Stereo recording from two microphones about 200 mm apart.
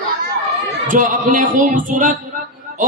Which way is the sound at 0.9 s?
40° right (ahead or behind).